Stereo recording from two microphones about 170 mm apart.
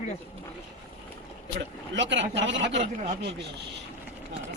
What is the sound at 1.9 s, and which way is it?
Speech, 90° right.